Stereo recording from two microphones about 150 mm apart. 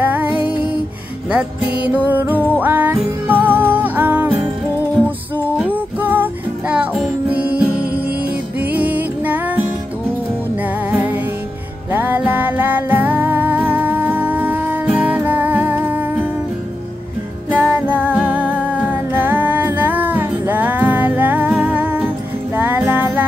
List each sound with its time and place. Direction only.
0.0 s music: 15° right (ahead or behind)
2.3 s music: 10° left (ahead or behind)
2.6 s music: 10° right (ahead or behind)
5.6 s music: 10° right (ahead or behind)
7.7 s music: 90° right
8.7 s music: 10° right (ahead or behind)
17.5 s music: 10° right (ahead or behind)